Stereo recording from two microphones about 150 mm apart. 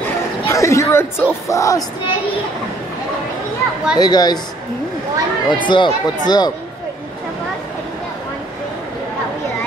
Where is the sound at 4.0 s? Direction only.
25° left (ahead or behind).